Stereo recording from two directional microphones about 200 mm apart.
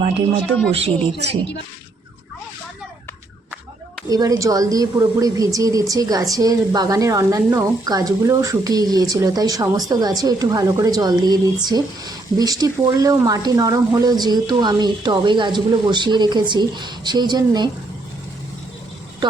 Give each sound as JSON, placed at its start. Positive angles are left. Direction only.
{"t": 0.4, "sound": "speech", "side_deg": 5}
{"t": 4.1, "sound": "a woman's voice", "side_deg": -15}